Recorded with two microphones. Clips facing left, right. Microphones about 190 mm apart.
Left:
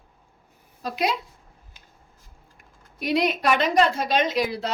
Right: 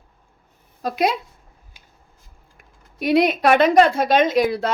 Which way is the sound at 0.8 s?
50° right (ahead or behind).